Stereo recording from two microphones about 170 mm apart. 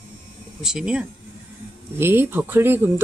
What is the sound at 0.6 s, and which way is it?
Speech, 5° right (ahead or behind).